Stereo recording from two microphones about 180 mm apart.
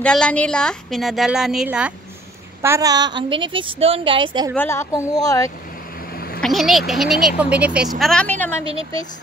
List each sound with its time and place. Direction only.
0.0 s a woman's voice: 5° left (ahead or behind)
2.6 s a woman's voice: 15° right (ahead or behind)
4.6 s speech: 15° left (ahead or behind)
6.1 s a sound: 60° left (ahead or behind)
6.4 s a woman's voice: centre (ahead or behind)
8.0 s a woman's voice: 5° left (ahead or behind)